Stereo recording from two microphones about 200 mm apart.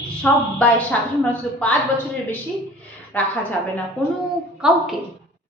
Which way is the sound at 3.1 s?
10° left (ahead or behind).